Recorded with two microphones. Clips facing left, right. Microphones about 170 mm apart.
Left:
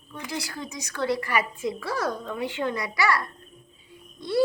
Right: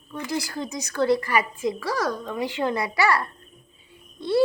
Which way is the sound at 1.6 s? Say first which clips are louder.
Right 3 dB; 80° right.